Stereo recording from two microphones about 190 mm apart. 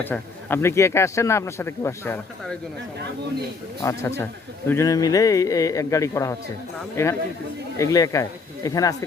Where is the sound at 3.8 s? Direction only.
15° left (ahead or behind).